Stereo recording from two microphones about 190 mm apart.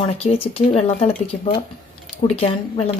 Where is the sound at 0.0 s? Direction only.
30° left (ahead or behind).